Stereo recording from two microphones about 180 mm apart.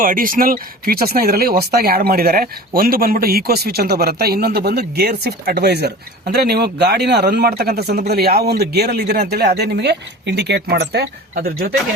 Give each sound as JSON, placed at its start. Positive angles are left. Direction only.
{"t": 0.0, "sound": "speech", "side_deg": -50}